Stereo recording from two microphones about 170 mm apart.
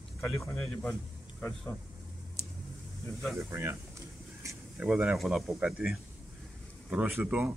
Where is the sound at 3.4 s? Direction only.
15° right (ahead or behind).